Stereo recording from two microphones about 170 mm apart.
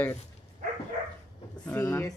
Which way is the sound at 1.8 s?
20° left (ahead or behind).